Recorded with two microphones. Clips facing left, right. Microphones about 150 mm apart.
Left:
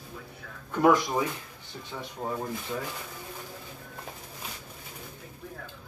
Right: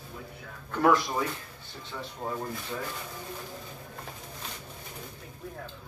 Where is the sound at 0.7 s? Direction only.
15° left (ahead or behind).